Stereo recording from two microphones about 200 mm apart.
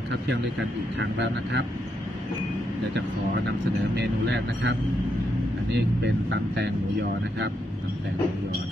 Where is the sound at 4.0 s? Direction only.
60° right (ahead or behind).